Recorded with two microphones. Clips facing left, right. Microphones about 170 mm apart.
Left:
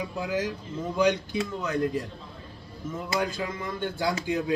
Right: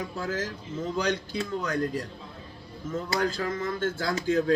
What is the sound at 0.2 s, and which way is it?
A man's voice, 15° left (ahead or behind).